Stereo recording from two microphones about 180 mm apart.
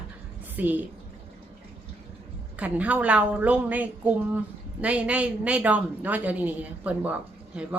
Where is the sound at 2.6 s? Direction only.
10° right (ahead or behind).